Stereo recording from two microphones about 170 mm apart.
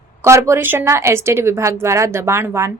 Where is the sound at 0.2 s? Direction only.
15° right (ahead or behind).